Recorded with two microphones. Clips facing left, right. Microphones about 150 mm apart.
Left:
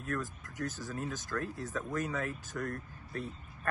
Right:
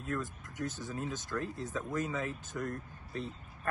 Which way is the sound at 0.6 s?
20° right (ahead or behind).